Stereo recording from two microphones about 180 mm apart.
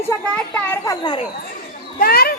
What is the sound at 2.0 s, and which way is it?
Speech, 55° left (ahead or behind).